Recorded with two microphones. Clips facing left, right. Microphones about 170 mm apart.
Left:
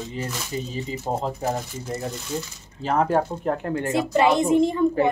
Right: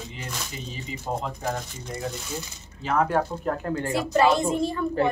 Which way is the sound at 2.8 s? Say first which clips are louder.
Left 2 dB; 30° left (ahead or behind).